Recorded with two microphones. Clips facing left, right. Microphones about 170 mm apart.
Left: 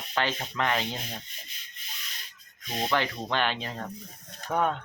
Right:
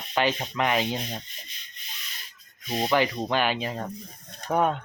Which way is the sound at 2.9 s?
10° right (ahead or behind).